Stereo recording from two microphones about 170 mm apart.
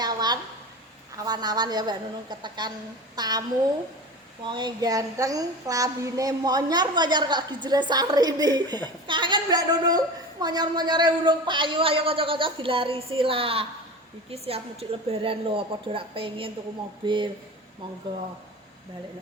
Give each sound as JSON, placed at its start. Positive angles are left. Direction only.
{"t": 0.0, "sound": "a sound", "side_deg": -25}
{"t": 1.1, "sound": "a woman's voice", "side_deg": -25}
{"t": 4.4, "sound": "a woman's voice", "side_deg": -25}